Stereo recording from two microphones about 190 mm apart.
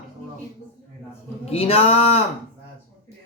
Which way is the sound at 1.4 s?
30° left (ahead or behind).